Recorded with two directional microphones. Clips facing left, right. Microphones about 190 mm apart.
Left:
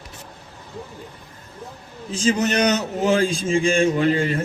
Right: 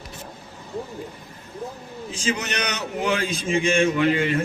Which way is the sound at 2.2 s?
30° left (ahead or behind).